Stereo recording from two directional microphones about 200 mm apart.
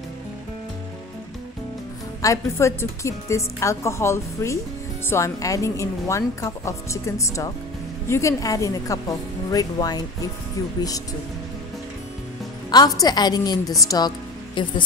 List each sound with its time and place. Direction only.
2.2 s a woman's voice: 15° left (ahead or behind)
12.7 s a woman's voice: 20° left (ahead or behind)